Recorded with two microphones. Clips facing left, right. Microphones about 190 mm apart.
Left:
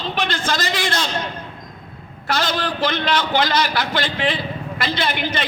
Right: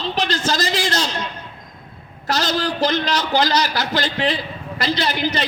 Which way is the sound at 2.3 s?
40° right (ahead or behind).